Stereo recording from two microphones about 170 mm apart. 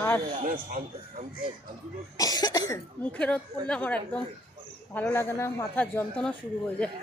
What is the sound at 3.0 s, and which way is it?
Speech, 10° left (ahead or behind).